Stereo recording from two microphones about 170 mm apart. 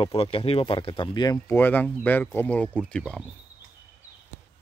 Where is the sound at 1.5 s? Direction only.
10° left (ahead or behind).